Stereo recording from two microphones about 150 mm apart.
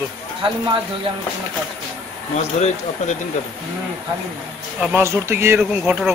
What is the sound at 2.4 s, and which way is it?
Speech, 50° left (ahead or behind).